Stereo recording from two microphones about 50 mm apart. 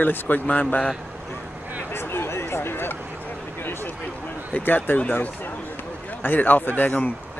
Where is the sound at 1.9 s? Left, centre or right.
Left.